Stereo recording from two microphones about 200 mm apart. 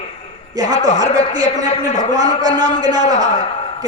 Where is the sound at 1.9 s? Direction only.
20° right (ahead or behind).